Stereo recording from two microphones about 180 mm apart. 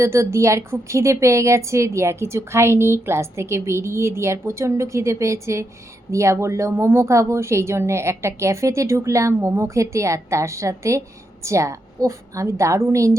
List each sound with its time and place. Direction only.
0.0 s a woman's voice: 15° right (ahead or behind)